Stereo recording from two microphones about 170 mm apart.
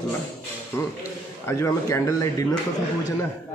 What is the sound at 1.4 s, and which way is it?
Speech, 15° left (ahead or behind).